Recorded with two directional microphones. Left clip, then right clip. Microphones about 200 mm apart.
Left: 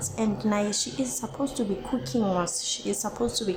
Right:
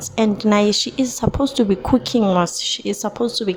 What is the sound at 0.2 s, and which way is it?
A woman's voice, 40° right (ahead or behind).